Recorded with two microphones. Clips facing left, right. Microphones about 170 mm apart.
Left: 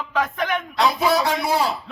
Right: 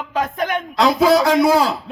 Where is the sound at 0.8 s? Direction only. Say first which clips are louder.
Right 6 dB; 90° right.